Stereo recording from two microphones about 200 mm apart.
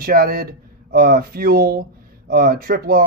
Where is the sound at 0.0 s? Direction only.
45° right (ahead or behind).